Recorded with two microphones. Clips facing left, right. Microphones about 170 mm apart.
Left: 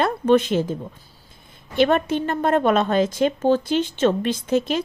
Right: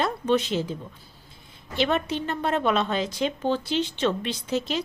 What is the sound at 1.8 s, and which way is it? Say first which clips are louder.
Speech: left 6 dB; 50° left (ahead or behind).